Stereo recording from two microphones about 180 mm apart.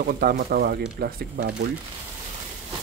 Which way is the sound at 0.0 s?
60° right (ahead or behind).